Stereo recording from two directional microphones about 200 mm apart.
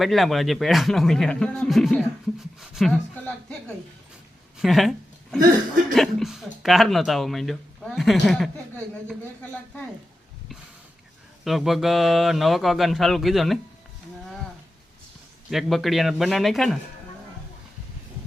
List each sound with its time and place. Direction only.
0.0 s speech: centre (ahead or behind)
4.6 s speech: centre (ahead or behind)
11.4 s speech: centre (ahead or behind)
15.4 s speech: centre (ahead or behind)